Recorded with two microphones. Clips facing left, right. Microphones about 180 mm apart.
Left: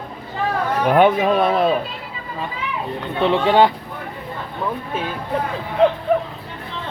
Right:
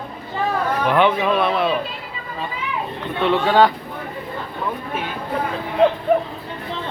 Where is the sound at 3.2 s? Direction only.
25° left (ahead or behind).